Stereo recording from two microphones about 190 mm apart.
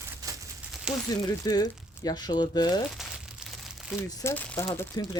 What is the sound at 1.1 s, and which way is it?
Speech, 20° left (ahead or behind).